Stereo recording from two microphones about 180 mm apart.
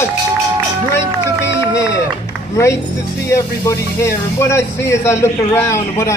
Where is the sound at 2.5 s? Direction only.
15° left (ahead or behind).